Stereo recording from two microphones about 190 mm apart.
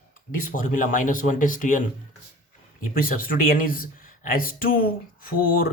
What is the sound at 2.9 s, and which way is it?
Speech, 45° left (ahead or behind).